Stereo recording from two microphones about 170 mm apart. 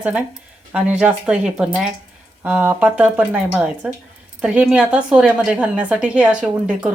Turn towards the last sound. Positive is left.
turn(degrees=-5)  # may be behind; listen again after turning